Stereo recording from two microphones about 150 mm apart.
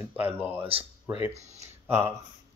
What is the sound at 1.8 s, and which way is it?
Speech, 15° right (ahead or behind).